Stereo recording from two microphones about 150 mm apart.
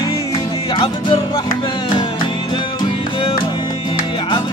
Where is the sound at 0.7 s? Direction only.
35° left (ahead or behind).